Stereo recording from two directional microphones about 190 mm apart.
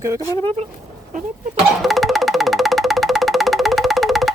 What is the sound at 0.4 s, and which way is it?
Speech, 35° right (ahead or behind).